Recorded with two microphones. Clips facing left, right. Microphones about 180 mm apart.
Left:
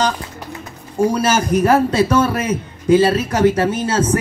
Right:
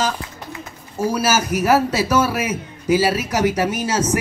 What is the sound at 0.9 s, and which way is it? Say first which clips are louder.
A man's voice: left 3 dB; 5° right (ahead or behind).